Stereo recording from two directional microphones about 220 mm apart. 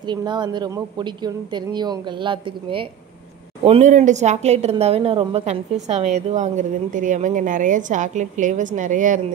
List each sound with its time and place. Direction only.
0.0 s speech: 20° right (ahead or behind); by 9.2 s 35° right (ahead or behind)